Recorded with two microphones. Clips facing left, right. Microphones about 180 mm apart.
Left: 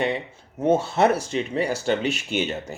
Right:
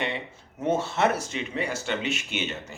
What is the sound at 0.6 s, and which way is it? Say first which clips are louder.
Speech: left 5 dB; 35° left (ahead or behind).